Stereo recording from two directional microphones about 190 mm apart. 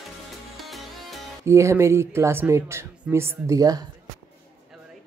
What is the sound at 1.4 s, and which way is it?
Speech, 15° right (ahead or behind).